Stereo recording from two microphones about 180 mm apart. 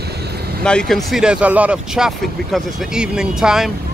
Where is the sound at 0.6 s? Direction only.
5° left (ahead or behind).